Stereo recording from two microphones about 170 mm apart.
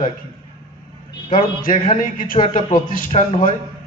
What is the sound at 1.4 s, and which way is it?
A man's voice, 50° left (ahead or behind).